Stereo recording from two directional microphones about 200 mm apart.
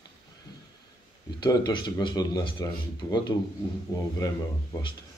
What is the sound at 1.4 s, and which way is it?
A man's voice, 20° left (ahead or behind).